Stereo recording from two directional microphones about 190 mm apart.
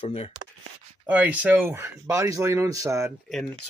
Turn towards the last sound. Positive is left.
turn(degrees=0)  # may be behind; listen again after turning